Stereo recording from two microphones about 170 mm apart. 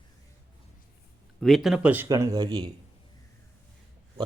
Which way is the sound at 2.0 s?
20° right (ahead or behind).